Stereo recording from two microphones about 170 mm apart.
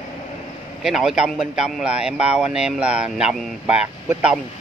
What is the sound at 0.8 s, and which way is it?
A man's voice, centre (ahead or behind).